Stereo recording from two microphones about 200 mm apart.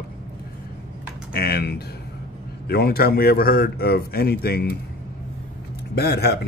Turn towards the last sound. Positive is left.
turn(degrees=55)  # may be behind; listen again after turning